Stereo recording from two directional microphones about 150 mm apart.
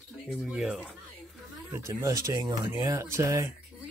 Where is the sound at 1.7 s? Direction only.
20° right (ahead or behind).